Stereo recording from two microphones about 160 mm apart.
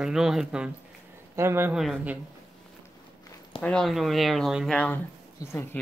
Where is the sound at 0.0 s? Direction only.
5° right (ahead or behind).